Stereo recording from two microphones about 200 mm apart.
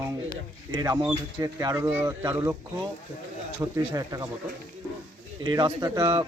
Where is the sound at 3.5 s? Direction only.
15° right (ahead or behind).